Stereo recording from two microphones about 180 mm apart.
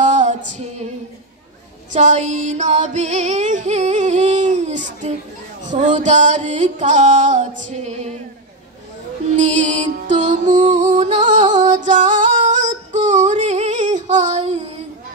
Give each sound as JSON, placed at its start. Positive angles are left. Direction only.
{"t": 0.0, "sound": "female singing", "side_deg": -40}
{"t": 1.9, "sound": "music", "side_deg": -45}
{"t": 9.4, "sound": "music", "side_deg": -40}